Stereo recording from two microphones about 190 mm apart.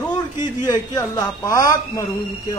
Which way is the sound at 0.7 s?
15° left (ahead or behind).